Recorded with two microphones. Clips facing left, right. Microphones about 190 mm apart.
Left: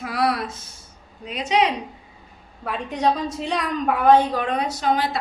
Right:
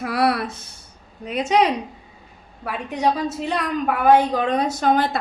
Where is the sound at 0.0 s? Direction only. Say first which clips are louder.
Right 3 dB; 60° right (ahead or behind).